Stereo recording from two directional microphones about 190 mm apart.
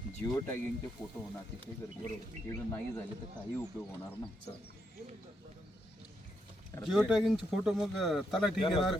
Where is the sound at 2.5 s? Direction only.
15° left (ahead or behind).